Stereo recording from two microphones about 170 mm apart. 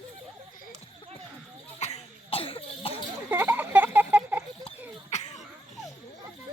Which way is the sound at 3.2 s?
10° right (ahead or behind).